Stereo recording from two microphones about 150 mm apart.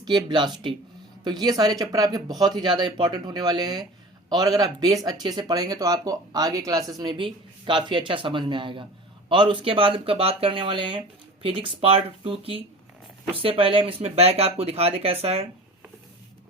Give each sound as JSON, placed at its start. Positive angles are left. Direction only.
{"t": 0.0, "sound": "speech", "side_deg": -30}